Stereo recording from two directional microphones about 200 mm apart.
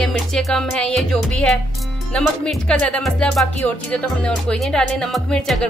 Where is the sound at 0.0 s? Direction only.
Centre (ahead or behind).